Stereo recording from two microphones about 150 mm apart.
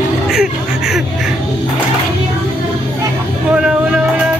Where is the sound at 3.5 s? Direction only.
5° right (ahead or behind).